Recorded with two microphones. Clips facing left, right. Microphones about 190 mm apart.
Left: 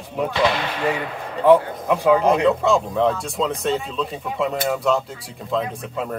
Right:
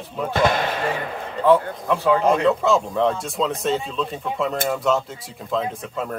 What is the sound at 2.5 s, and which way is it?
Speech, centre (ahead or behind).